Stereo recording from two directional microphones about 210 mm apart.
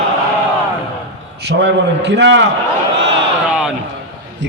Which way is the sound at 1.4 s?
55° right (ahead or behind).